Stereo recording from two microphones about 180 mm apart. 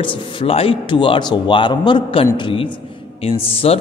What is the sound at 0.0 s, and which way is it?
A man's voice, 30° left (ahead or behind).